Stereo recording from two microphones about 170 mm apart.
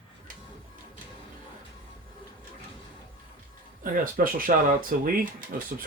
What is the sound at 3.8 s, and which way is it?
Speech, 55° right (ahead or behind).